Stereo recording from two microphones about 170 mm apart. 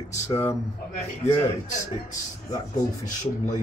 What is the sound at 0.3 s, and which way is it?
Speech, 15° left (ahead or behind).